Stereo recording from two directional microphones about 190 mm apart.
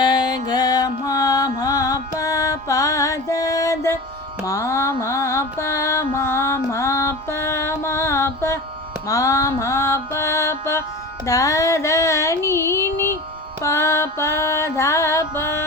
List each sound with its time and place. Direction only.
0.0 s music: 20° left (ahead or behind)
4.4 s mantra: 15° left (ahead or behind)
9.0 s music: 15° left (ahead or behind)